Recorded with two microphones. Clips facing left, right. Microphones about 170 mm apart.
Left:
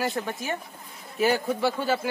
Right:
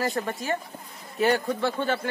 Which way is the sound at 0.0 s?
Centre (ahead or behind).